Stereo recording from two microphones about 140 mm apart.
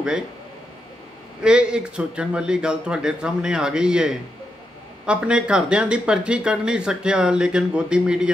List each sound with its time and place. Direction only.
1.4 s a man's voice: 5° right (ahead or behind)